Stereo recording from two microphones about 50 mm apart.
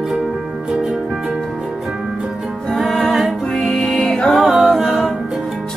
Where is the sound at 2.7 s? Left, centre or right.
Centre.